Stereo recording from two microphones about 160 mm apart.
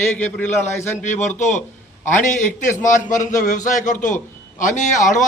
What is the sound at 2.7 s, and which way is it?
A man's voice, 55° left (ahead or behind).